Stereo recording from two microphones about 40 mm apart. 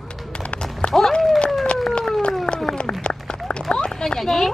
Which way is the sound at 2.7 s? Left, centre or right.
Left.